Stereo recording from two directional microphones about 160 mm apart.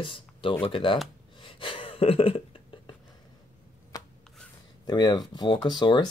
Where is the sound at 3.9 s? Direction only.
25° left (ahead or behind).